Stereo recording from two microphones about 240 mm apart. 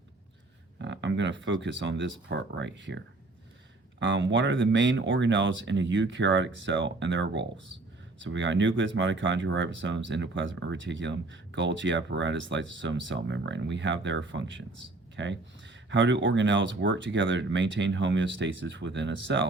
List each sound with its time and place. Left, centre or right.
0.8 s speech: right
4.0 s speech: right